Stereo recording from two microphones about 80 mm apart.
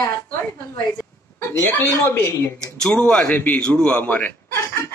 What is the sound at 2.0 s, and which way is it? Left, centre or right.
Speech, left.